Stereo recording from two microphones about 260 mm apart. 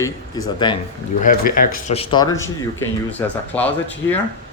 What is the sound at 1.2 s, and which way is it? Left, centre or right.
Speech, left.